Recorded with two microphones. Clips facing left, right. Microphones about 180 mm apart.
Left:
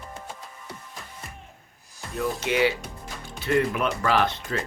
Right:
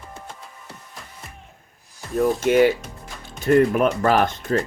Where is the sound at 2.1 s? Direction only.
50° right (ahead or behind).